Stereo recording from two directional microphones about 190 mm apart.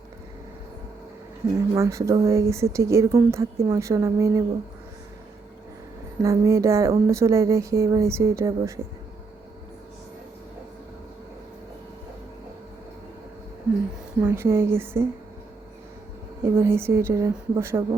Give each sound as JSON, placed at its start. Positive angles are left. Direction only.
{"t": 1.5, "sound": "speech", "side_deg": -15}
{"t": 6.2, "sound": "speech", "side_deg": -15}
{"t": 14.2, "sound": "speech", "side_deg": -10}
{"t": 16.4, "sound": "speech", "side_deg": -10}